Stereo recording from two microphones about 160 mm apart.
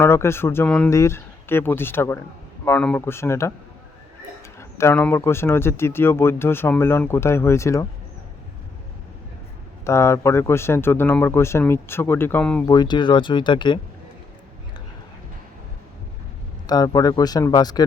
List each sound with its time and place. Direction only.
0.0 s speech: 15° left (ahead or behind)
4.8 s speech: 15° left (ahead or behind)
9.8 s speech: 20° left (ahead or behind)
12.6 s speech: 25° left (ahead or behind)
16.6 s speech: 25° left (ahead or behind)